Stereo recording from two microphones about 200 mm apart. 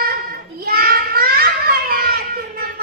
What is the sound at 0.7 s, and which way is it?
Children playing, 45° right (ahead or behind).